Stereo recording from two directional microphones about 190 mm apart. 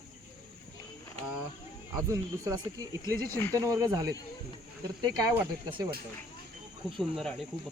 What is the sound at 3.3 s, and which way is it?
Speech, 10° left (ahead or behind).